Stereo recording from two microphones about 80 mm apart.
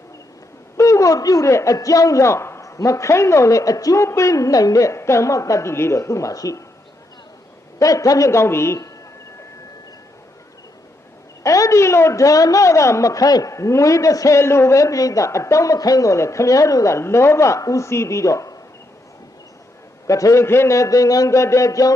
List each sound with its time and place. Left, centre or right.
0.8 s a woman's voice: left
7.8 s a woman's voice: left
11.4 s a woman's voice: left
20.1 s a woman's voice: left